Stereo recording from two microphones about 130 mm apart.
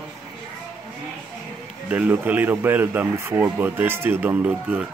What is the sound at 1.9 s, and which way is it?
Speech, 10° right (ahead or behind).